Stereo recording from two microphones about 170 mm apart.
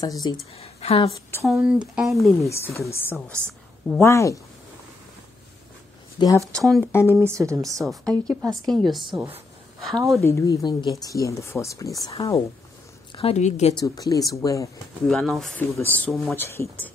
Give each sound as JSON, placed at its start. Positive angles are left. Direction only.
{"t": 0.6, "sound": "a woman's voice", "side_deg": 35}
{"t": 1.4, "sound": "speech", "side_deg": -5}
{"t": 2.4, "sound": "speech", "side_deg": 15}
{"t": 6.1, "sound": "speech", "side_deg": 20}
{"t": 6.5, "sound": "speech", "side_deg": 0}
{"t": 6.9, "sound": "speech", "side_deg": 15}
{"t": 7.2, "sound": "speech", "side_deg": -15}
{"t": 7.8, "sound": "speech", "side_deg": 0}
{"t": 10.2, "sound": "speech", "side_deg": 20}
{"t": 13.1, "sound": "a woman's voice", "side_deg": 35}
{"t": 13.7, "sound": "speech", "side_deg": 20}
{"t": 15.0, "sound": "speech", "side_deg": 0}